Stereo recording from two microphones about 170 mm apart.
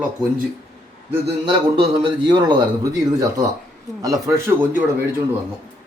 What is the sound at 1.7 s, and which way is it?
Speech, 25° right (ahead or behind).